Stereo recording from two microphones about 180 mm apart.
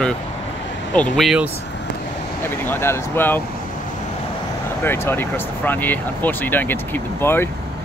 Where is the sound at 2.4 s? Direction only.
10° left (ahead or behind).